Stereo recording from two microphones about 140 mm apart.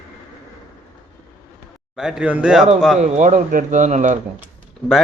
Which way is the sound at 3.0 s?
60° right (ahead or behind).